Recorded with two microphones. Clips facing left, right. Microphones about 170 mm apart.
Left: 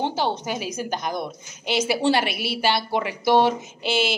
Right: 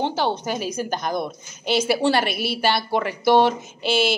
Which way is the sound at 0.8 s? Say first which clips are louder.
Right 2 dB; 15° left (ahead or behind).